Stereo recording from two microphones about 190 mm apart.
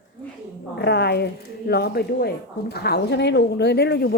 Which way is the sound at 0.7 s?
60° left (ahead or behind).